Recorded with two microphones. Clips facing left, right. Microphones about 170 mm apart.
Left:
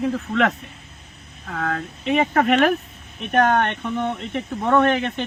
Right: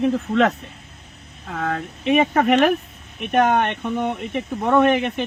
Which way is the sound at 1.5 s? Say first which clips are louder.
Right 1 dB; 20° right (ahead or behind).